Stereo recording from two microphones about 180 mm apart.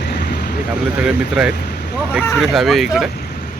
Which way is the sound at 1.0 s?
5° right (ahead or behind).